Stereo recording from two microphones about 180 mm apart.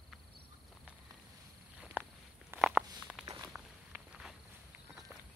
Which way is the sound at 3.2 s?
20° right (ahead or behind).